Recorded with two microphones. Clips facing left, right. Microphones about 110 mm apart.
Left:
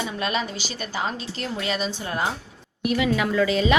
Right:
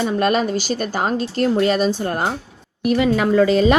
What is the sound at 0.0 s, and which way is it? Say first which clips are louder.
A woman's voice: right 9 dB; 45° right (ahead or behind).